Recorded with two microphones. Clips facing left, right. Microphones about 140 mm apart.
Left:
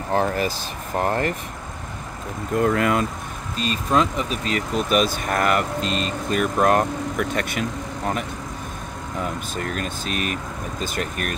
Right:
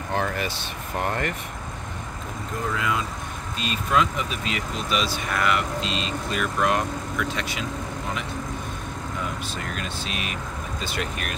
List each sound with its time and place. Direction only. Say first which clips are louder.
0.1 s speech: left 5 dB; 35° left (ahead or behind)
2.6 s speech: left 7 dB; 55° left (ahead or behind)
3.5 s speech: left 3 dB; 40° left (ahead or behind)
9.2 s speech: left 7 dB; 45° left (ahead or behind)